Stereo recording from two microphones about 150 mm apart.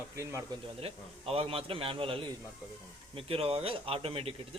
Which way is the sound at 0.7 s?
40° right (ahead or behind).